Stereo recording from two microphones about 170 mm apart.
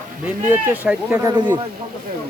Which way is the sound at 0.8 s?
10° right (ahead or behind).